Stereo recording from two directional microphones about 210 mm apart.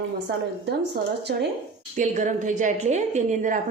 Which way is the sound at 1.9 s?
35° right (ahead or behind).